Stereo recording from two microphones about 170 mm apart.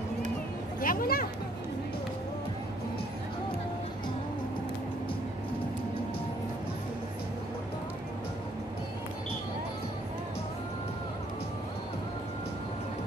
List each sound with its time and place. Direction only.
0.7 s speech: 60° left (ahead or behind)